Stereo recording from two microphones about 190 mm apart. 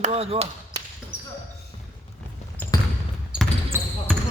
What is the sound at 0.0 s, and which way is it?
Speech, 30° right (ahead or behind).